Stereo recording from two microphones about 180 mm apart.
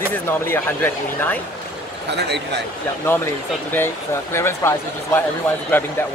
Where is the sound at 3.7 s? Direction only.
15° left (ahead or behind).